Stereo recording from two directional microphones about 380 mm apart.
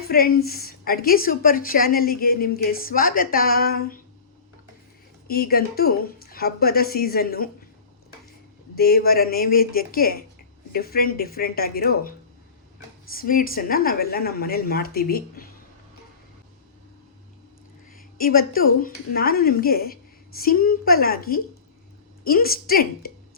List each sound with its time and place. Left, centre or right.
0.1 s a woman's voice: left
5.3 s a woman's voice: left
8.7 s a woman's voice: left
13.1 s a woman's voice: left
17.9 s a woman's voice: left